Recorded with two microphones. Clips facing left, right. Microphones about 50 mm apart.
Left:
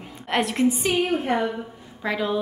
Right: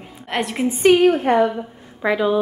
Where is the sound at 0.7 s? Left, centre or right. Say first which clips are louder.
Right 11 dB; right.